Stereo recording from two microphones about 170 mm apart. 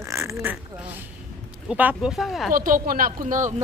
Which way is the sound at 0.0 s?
15° right (ahead or behind).